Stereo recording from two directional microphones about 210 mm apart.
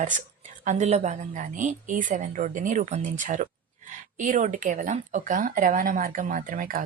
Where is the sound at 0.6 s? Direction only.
35° right (ahead or behind).